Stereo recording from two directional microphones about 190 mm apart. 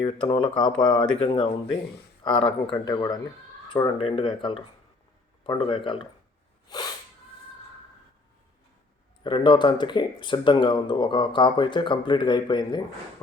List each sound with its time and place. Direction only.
0.0 s speech: 25° left (ahead or behind)
6.7 s sneeze: 20° left (ahead or behind)
9.2 s speech: 25° left (ahead or behind)